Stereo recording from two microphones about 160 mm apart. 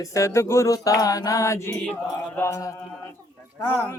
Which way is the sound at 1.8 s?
5° left (ahead or behind).